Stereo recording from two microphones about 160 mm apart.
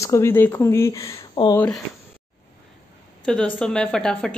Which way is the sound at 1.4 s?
35° left (ahead or behind).